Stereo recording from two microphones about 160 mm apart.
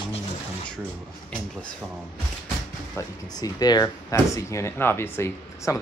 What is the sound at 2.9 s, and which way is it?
Speech, 25° left (ahead or behind).